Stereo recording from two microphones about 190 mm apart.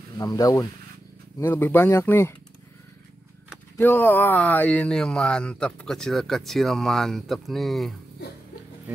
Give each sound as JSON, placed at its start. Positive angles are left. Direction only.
{"t": 0.2, "sound": "speech", "side_deg": 20}
{"t": 3.7, "sound": "speech", "side_deg": 10}